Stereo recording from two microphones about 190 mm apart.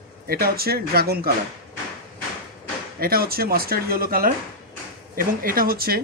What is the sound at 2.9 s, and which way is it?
Speech, 50° right (ahead or behind).